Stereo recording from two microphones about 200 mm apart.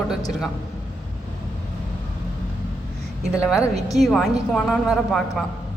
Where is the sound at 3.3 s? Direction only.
5° right (ahead or behind).